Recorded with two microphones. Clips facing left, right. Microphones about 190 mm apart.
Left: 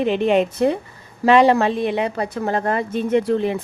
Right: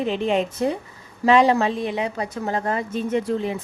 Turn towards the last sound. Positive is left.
turn(degrees=65)  # may be behind; listen again after turning